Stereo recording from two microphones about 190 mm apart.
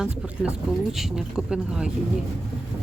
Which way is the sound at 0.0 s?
Centre (ahead or behind).